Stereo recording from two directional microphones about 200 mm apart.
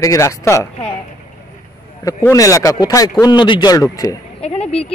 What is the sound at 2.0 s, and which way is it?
Speech, 15° left (ahead or behind).